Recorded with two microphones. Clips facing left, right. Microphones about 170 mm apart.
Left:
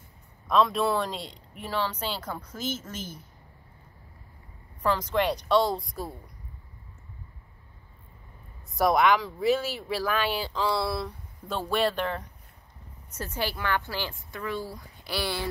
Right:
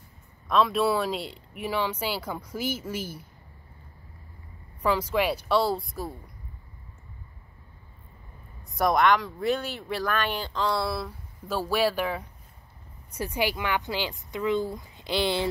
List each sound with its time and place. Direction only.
0.5 s speech: centre (ahead or behind)
4.8 s speech: 10° right (ahead or behind)
8.6 s speech: centre (ahead or behind); by 15.4 s 20° right (ahead or behind)